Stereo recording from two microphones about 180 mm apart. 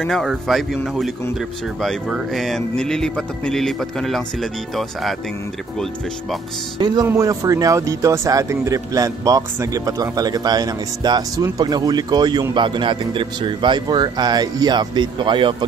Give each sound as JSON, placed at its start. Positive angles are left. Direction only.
{"t": 0.0, "sound": "speech", "side_deg": 0}
{"t": 6.8, "sound": "speech", "side_deg": -20}